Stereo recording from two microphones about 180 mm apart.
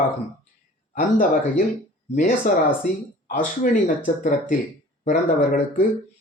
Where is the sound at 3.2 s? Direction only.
50° left (ahead or behind).